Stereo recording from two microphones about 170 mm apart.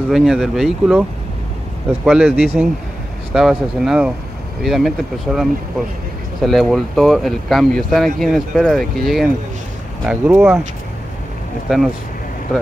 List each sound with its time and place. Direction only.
0.1 s speech: centre (ahead or behind)
2.0 s speech: 5° right (ahead or behind)